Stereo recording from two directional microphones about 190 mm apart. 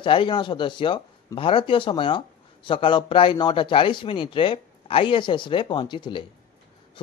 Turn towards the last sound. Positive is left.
turn(degrees=25)  # may be behind; listen again after turning